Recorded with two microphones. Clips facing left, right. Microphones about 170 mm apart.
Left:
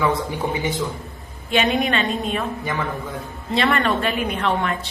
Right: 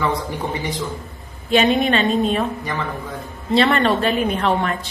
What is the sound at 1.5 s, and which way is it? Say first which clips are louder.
Speech: right 4 dB; 35° right (ahead or behind).